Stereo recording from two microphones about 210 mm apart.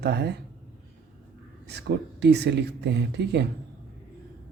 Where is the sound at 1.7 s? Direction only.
55° right (ahead or behind).